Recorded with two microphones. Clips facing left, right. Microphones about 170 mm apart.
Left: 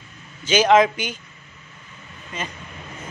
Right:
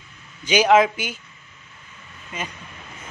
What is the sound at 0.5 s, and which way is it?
Speech, 10° right (ahead or behind).